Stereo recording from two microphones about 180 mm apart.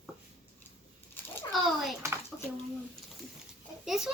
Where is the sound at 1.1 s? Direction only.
10° left (ahead or behind).